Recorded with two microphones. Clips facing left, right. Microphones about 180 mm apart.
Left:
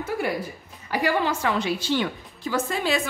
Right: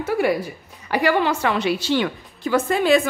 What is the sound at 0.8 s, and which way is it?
A woman's voice, 70° right (ahead or behind).